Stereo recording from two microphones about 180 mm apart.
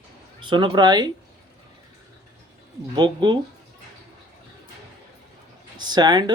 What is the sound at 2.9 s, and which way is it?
Speech, 25° right (ahead or behind).